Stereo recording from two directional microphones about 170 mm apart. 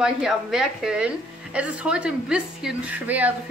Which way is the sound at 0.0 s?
5° right (ahead or behind).